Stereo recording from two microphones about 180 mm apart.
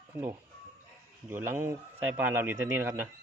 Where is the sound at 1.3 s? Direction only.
10° right (ahead or behind).